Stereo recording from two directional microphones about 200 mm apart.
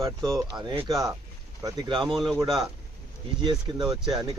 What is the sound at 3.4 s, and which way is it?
Speech, 20° right (ahead or behind).